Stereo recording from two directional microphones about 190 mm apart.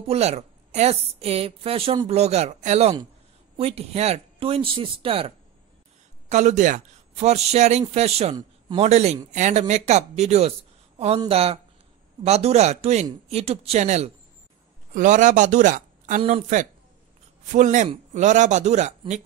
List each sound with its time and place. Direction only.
0.0 s a woman's voice: 35° right (ahead or behind)
16.2 s a woman's voice: 30° right (ahead or behind)